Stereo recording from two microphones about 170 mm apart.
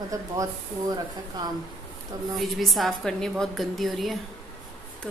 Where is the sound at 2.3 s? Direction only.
Centre (ahead or behind).